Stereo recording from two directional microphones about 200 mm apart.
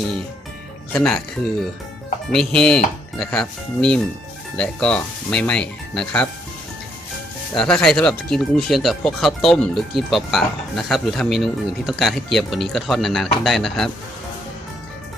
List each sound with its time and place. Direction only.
0.9 s speech: centre (ahead or behind)
2.3 s speech: 5° left (ahead or behind)
7.5 s speech: 5° left (ahead or behind)